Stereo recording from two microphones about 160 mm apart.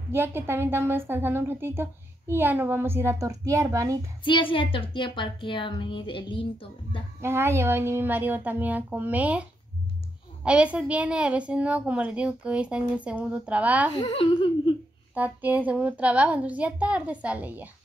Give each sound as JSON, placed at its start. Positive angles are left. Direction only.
{"t": 0.1, "sound": "a woman's voice", "side_deg": -15}
{"t": 4.2, "sound": "a woman's voice", "side_deg": 30}
{"t": 7.2, "sound": "a woman's voice", "side_deg": -15}
{"t": 13.9, "sound": "a woman's voice", "side_deg": 35}
{"t": 15.1, "sound": "a woman's voice", "side_deg": -10}